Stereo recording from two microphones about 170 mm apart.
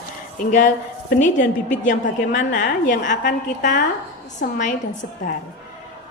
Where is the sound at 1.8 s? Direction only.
50° left (ahead or behind).